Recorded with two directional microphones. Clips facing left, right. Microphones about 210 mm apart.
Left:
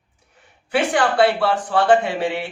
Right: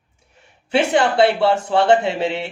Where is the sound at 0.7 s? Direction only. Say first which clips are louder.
Right 2 dB; 25° right (ahead or behind).